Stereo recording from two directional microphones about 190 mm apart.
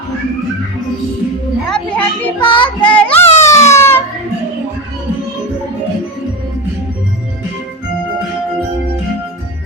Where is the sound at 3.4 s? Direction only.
15° left (ahead or behind).